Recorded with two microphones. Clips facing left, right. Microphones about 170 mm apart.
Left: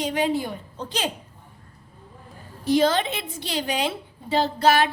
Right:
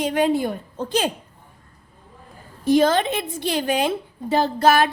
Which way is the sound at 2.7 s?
50° right (ahead or behind).